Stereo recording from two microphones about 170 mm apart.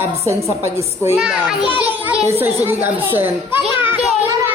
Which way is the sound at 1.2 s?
5° right (ahead or behind).